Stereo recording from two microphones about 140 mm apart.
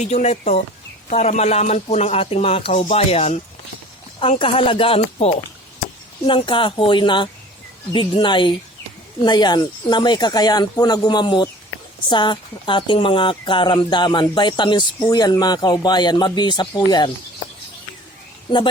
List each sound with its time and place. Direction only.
0.0 s speech: 50° left (ahead or behind); by 17.1 s 30° left (ahead or behind)
18.5 s speech: 35° left (ahead or behind)